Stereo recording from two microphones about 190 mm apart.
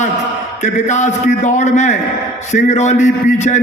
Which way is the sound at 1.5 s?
40° left (ahead or behind).